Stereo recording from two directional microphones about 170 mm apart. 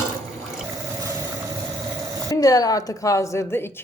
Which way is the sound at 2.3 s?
20° left (ahead or behind).